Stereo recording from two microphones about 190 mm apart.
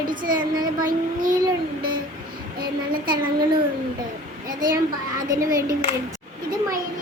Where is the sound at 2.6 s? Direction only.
50° right (ahead or behind).